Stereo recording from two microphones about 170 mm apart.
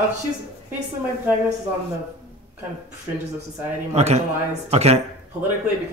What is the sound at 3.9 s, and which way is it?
Speech, 40° right (ahead or behind).